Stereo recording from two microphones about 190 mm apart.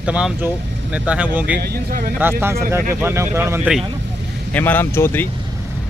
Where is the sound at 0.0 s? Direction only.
5° right (ahead or behind).